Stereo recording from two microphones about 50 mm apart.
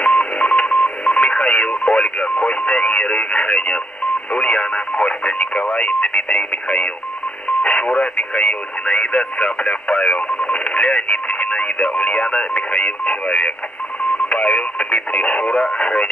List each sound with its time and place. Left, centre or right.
0.0 s telephone dialing: left
2.3 s radio: left
4.3 s speech: left
14.3 s radio: left